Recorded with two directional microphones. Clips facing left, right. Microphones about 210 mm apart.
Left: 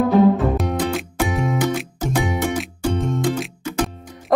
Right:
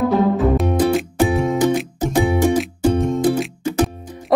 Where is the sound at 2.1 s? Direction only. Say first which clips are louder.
Right 6 dB; 35° right (ahead or behind).